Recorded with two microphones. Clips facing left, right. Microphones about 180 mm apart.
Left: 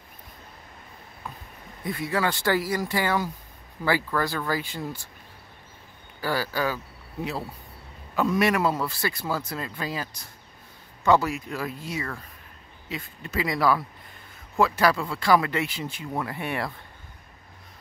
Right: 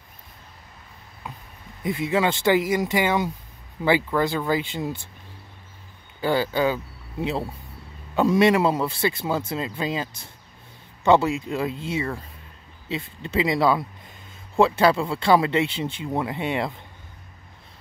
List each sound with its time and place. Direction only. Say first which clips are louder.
1.8 s speech: right 4 dB; 20° right (ahead or behind)
6.2 s speech: right 5 dB; 20° right (ahead or behind)
8.2 s speech: right 5 dB; 25° right (ahead or behind)